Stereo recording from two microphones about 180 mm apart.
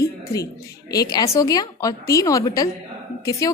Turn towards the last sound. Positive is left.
turn(degrees=20)  # may be behind; listen again after turning